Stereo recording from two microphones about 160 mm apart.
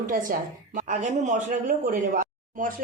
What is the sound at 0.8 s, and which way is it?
Speech, 50° right (ahead or behind).